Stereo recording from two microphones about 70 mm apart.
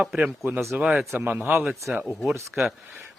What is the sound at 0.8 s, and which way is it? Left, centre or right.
Speech, centre.